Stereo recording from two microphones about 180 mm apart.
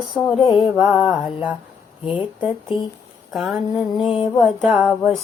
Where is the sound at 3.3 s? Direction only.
Centre (ahead or behind).